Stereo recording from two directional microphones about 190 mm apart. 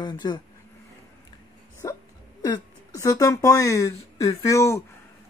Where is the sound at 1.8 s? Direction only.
20° left (ahead or behind).